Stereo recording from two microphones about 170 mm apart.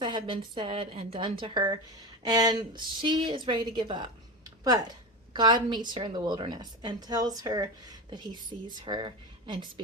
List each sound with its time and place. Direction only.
0.0 s a woman's voice: 25° right (ahead or behind)
5.3 s a woman's voice: 25° right (ahead or behind)